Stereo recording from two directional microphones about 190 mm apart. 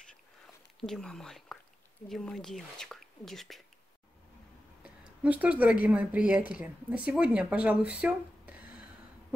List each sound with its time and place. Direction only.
0.7 s speech: centre (ahead or behind)
4.8 s speech: 10° right (ahead or behind)